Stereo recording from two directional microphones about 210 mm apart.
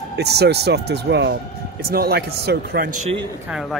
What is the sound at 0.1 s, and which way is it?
Speech, 50° right (ahead or behind).